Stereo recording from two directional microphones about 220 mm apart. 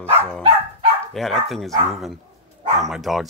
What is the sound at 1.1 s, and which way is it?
Speech, centre (ahead or behind).